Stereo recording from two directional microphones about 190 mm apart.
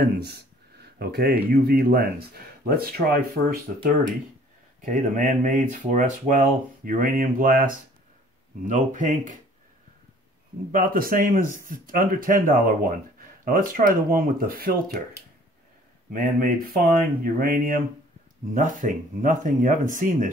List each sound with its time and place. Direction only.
0.0 s speech: 60° right (ahead or behind)
4.8 s speech: 45° right (ahead or behind)
10.7 s speech: 50° right (ahead or behind)
16.1 s speech: 50° right (ahead or behind)